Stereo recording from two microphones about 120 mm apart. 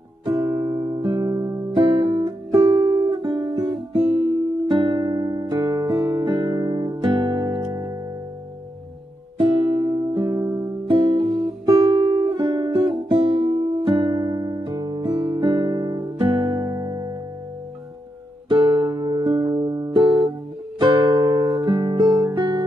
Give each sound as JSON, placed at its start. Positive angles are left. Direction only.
{"t": 0.4, "sound": "music", "side_deg": -25}
{"t": 1.7, "sound": "music", "side_deg": -45}
{"t": 2.0, "sound": "music", "side_deg": -30}
{"t": 5.9, "sound": "music", "side_deg": -20}
{"t": 6.2, "sound": "music", "side_deg": -35}
{"t": 9.7, "sound": "music", "side_deg": -25}
{"t": 18.5, "sound": "music", "side_deg": -40}